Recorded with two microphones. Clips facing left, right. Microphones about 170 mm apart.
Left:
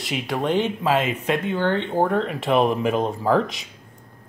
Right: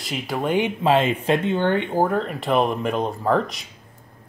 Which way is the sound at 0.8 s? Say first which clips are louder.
Right 3 dB; 30° right (ahead or behind).